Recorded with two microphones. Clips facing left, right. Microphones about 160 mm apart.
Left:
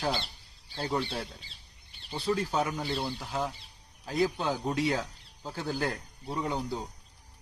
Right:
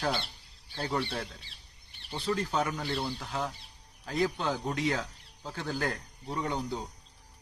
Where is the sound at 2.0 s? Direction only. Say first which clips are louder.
Left 2 dB; 5° left (ahead or behind).